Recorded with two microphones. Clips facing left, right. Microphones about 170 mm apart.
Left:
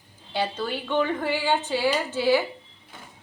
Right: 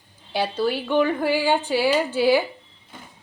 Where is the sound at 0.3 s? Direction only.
10° right (ahead or behind).